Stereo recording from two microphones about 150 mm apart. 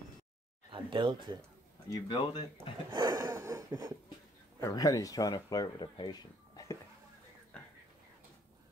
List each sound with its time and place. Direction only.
0.7 s speech: 35° right (ahead or behind)
2.0 s speech: 35° left (ahead or behind)
2.9 s a sound: 25° right (ahead or behind)
4.6 s speech: 20° left (ahead or behind)
7.5 s whispering: 5° left (ahead or behind)